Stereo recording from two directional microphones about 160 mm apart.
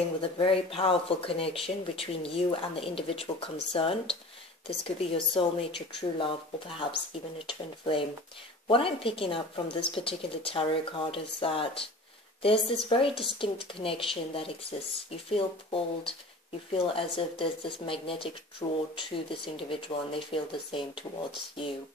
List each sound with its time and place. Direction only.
0.2 s speech: 35° left (ahead or behind)
7.4 s a woman's voice: 35° left (ahead or behind)